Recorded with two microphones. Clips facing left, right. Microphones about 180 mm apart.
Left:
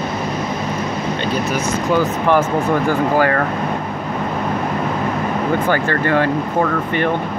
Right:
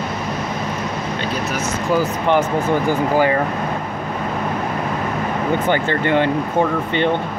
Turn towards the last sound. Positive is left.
turn(degrees=-20)  # may be behind; listen again after turning